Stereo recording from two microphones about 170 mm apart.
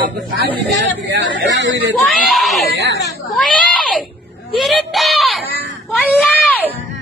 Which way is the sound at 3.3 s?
Centre (ahead or behind).